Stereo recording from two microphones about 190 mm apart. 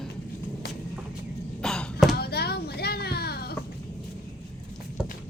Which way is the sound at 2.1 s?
55° left (ahead or behind).